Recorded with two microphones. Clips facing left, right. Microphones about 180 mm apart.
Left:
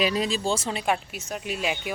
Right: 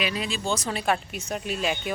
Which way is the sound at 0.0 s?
35° left (ahead or behind).